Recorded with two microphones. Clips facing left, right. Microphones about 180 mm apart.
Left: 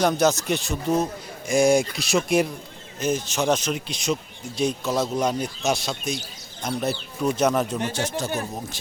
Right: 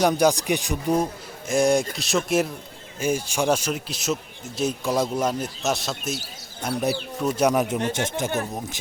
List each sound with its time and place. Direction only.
0.0 s a man's voice: 10° right (ahead or behind)
1.5 s a man's voice: centre (ahead or behind); by 8.3 s 20° right (ahead or behind)